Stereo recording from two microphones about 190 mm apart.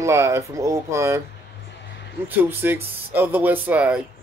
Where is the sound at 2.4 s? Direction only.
10° right (ahead or behind).